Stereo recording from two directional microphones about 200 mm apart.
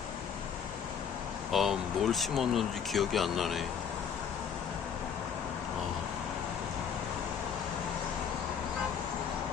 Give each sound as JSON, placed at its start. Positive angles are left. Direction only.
{"t": 1.5, "sound": "speech", "side_deg": 0}